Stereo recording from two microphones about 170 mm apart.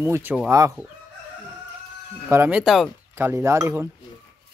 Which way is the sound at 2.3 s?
10° right (ahead or behind).